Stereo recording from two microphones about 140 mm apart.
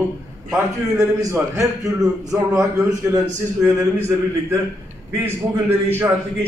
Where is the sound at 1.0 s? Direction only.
25° right (ahead or behind).